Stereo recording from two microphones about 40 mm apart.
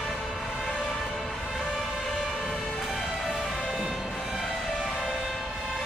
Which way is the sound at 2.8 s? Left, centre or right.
Centre.